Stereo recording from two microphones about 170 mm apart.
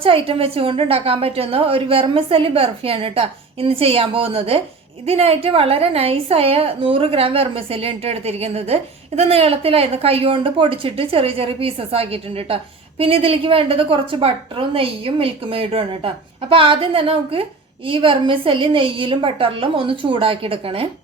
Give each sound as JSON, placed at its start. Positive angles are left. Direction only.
{"t": 0.0, "sound": "a woman's voice", "side_deg": -30}